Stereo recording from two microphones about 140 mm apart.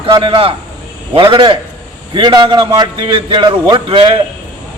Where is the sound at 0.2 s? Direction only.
40° right (ahead or behind).